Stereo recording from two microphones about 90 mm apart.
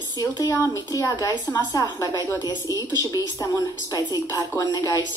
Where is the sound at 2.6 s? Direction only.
35° right (ahead or behind).